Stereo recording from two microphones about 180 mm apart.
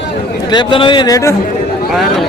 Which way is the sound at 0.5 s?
25° left (ahead or behind).